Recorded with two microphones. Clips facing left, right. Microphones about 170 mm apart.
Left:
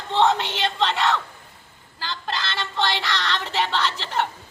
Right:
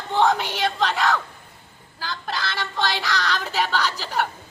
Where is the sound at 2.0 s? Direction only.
10° right (ahead or behind).